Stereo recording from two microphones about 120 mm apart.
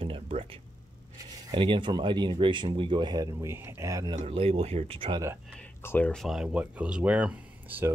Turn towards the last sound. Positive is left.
turn(degrees=-15)  # may be behind; listen again after turning